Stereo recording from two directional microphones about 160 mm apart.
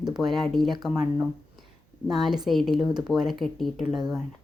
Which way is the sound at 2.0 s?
Centre (ahead or behind).